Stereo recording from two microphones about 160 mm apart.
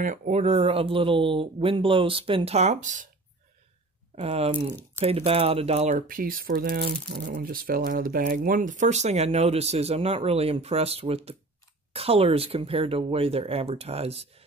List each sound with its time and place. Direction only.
0.0 s speech: 55° right (ahead or behind)
4.1 s speech: 40° right (ahead or behind)
6.0 s speech: 60° right (ahead or behind); by 7.2 s 85° right
7.2 s speech: 60° right (ahead or behind); by 14.3 s 40° right (ahead or behind)